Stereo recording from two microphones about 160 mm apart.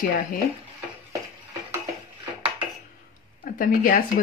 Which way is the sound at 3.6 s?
60° left (ahead or behind).